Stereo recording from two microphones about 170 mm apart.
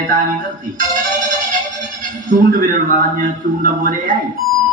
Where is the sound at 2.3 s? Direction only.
50° right (ahead or behind).